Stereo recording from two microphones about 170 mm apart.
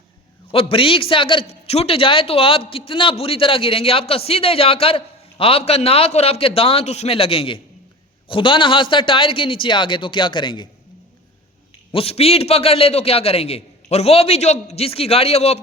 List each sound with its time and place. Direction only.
0.5 s a man's voice: 35° left (ahead or behind)
11.9 s a man's voice: 35° left (ahead or behind)